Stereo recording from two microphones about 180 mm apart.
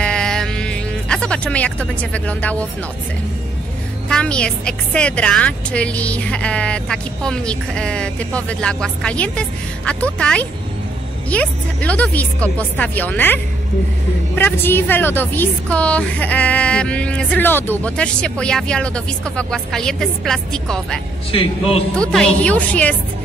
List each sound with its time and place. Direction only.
0.0 s music: 5° left (ahead or behind)
4.1 s a woman's voice: 5° left (ahead or behind)
21.3 s a man's voice: 30° left (ahead or behind)
21.9 s a woman's voice: 5° left (ahead or behind)